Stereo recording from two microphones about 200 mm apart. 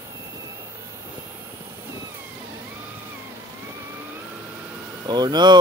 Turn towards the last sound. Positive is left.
turn(degrees=-20)  # may be behind; listen again after turning